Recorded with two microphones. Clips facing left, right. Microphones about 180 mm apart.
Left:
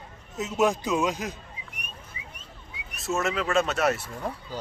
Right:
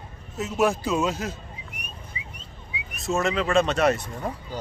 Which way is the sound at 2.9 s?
Centre (ahead or behind).